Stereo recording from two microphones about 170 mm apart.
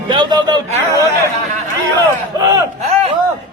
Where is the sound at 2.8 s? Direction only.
40° right (ahead or behind).